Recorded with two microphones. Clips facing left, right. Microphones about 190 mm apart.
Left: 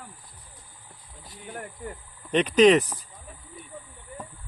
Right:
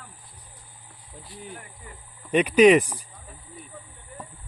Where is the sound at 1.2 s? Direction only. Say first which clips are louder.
Left 3 dB; 45° left (ahead or behind).